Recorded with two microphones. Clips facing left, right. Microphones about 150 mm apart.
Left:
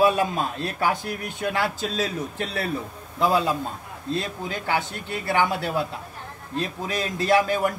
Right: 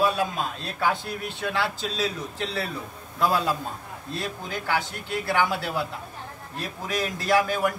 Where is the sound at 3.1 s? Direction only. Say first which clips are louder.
Left 2 dB; 20° left (ahead or behind).